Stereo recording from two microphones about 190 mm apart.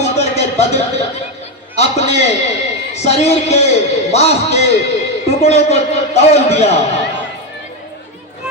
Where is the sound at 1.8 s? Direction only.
35° left (ahead or behind).